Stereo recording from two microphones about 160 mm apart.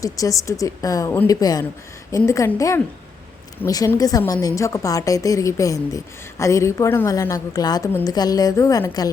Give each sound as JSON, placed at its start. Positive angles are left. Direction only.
{"t": 0.0, "sound": "a woman's voice", "side_deg": 20}